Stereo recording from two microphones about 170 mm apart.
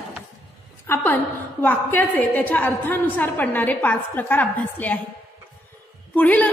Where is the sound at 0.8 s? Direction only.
10° left (ahead or behind).